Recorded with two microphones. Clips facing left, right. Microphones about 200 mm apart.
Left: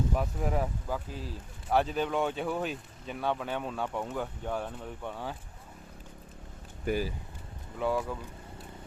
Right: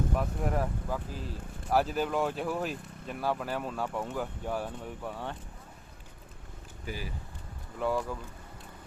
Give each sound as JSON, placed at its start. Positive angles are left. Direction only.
{"t": 0.2, "sound": "speech", "side_deg": 0}
{"t": 6.9, "sound": "speech", "side_deg": 55}
{"t": 7.8, "sound": "speech", "side_deg": 0}